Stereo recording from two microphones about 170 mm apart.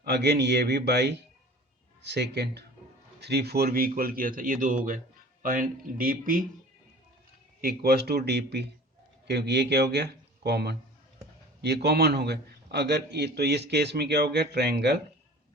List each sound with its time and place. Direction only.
0.0 s speech: 75° right (ahead or behind); by 6.4 s 55° right (ahead or behind)
7.6 s a man's voice: 65° right (ahead or behind)